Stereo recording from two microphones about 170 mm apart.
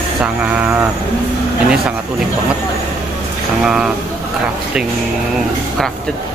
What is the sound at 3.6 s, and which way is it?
Speech, 5° right (ahead or behind).